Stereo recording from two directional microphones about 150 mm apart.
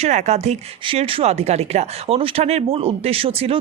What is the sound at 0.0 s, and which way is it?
Speech, 50° right (ahead or behind).